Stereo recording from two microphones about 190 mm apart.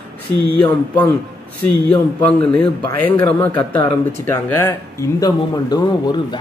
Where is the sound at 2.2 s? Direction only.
5° left (ahead or behind).